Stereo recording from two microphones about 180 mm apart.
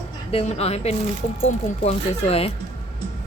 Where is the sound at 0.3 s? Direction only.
35° left (ahead or behind).